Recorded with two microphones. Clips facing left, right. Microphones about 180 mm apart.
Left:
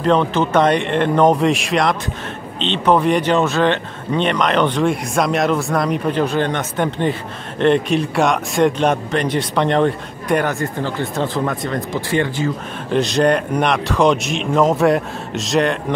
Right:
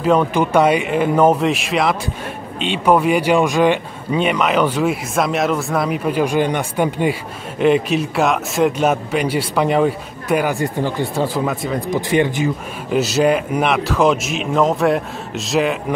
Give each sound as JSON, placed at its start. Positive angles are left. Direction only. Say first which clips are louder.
{"t": 0.0, "sound": "speech", "louder": "right 1 dB", "side_deg": -10}
{"t": 10.5, "sound": "speech", "louder": "right 2 dB", "side_deg": -15}
{"t": 12.1, "sound": "speech", "louder": "right 2 dB", "side_deg": -15}
{"t": 12.9, "sound": "speech", "louder": "even", "side_deg": -5}